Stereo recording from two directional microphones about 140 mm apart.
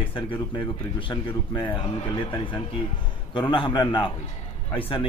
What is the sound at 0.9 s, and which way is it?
A man's voice, 35° left (ahead or behind).